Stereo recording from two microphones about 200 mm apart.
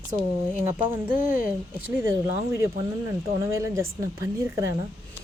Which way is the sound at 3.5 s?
15° right (ahead or behind).